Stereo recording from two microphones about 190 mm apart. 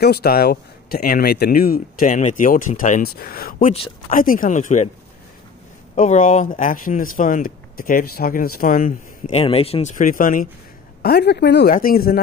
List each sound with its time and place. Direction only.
0.0 s speech: 55° left (ahead or behind)
5.9 s speech: 40° left (ahead or behind)
9.3 s a woman's voice: 30° left (ahead or behind); by 11.7 s 60° left (ahead or behind)
11.7 s speech: 50° left (ahead or behind)